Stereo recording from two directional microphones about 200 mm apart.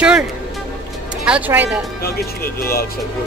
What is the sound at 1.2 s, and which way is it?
Speech, 5° right (ahead or behind).